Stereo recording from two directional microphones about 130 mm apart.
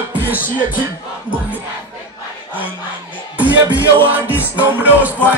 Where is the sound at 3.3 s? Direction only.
10° right (ahead or behind).